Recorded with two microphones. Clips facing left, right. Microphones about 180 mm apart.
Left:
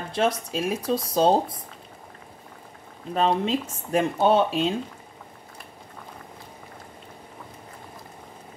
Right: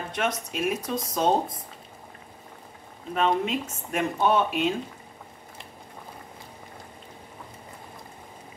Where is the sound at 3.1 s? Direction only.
35° left (ahead or behind).